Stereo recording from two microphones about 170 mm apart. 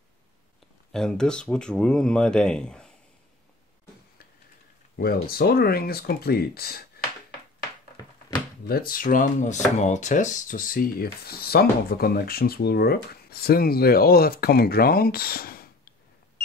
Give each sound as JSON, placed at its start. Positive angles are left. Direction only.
{"t": 0.9, "sound": "speech", "side_deg": 5}
{"t": 4.9, "sound": "speech", "side_deg": 60}
{"t": 8.6, "sound": "speech", "side_deg": 60}